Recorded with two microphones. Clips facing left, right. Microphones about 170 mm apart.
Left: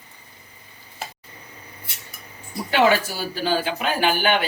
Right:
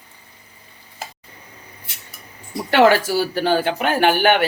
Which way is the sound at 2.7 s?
75° right (ahead or behind).